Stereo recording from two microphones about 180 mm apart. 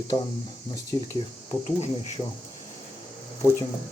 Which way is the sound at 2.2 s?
5° left (ahead or behind).